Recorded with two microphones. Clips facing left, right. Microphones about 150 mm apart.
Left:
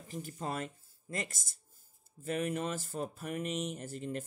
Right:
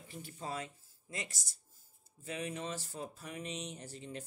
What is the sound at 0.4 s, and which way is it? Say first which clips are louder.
Speech: left 3 dB; 60° left (ahead or behind).